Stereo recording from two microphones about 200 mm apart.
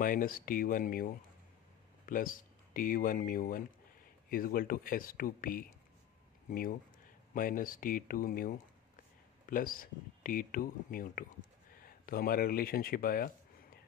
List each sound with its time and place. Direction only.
0.0 s speech: 45° left (ahead or behind)